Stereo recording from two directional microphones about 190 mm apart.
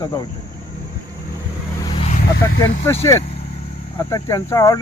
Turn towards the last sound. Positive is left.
turn(degrees=15)  # may be behind; listen again after turning